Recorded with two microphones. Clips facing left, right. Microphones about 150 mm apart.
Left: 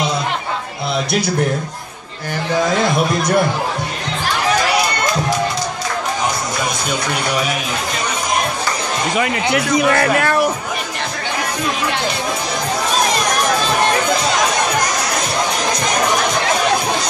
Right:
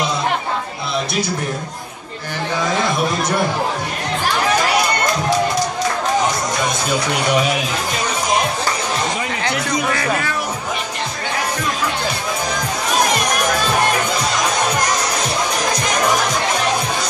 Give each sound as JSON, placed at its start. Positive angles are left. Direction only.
{"t": 9.1, "sound": "speech", "side_deg": 75}